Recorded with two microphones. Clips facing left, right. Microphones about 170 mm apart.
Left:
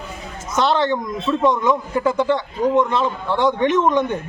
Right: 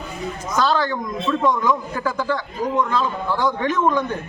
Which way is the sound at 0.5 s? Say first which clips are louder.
Left 3 dB; 25° left (ahead or behind).